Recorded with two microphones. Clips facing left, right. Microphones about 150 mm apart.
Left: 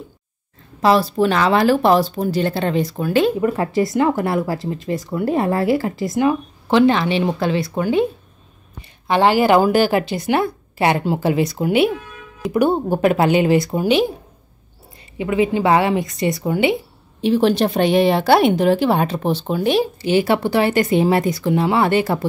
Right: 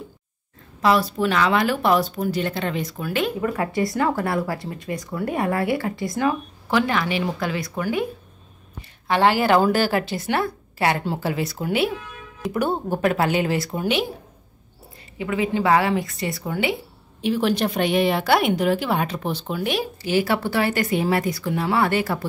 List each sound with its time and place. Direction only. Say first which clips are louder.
0.8 s a woman's voice: left 4 dB; 30° left (ahead or behind)
15.1 s a woman's voice: left 5 dB; 20° left (ahead or behind)